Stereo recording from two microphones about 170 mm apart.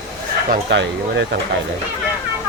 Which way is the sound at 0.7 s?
90° right.